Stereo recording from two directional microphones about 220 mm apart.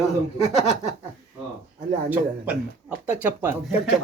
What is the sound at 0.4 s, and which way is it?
Speech, 30° left (ahead or behind).